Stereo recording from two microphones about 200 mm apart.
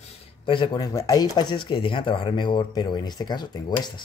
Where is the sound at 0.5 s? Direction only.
20° left (ahead or behind).